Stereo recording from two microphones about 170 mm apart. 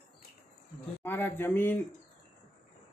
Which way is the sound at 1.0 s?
10° left (ahead or behind).